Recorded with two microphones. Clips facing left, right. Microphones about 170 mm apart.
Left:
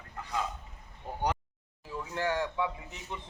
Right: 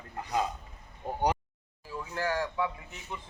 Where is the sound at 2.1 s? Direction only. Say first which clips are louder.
Even; 20° left (ahead or behind).